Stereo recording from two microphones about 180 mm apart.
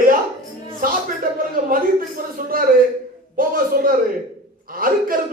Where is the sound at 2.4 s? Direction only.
50° right (ahead or behind).